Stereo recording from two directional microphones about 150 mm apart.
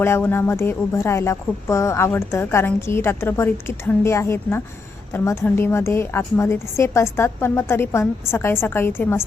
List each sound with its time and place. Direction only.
0.0 s speech: 15° left (ahead or behind)